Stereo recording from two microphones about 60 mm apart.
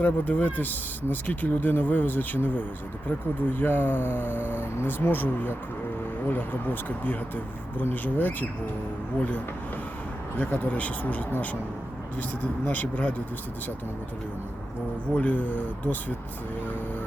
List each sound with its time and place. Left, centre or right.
0.0 s speech: left
10.3 s speech: left
15.1 s speech: left